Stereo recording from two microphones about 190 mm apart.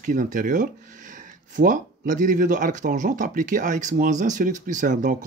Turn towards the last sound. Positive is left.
turn(degrees=-40)  # may be behind; listen again after turning